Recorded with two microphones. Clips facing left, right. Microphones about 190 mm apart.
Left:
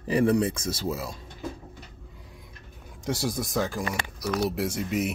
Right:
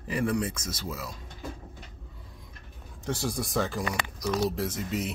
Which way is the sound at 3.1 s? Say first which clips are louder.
Left 2 dB; 10° left (ahead or behind).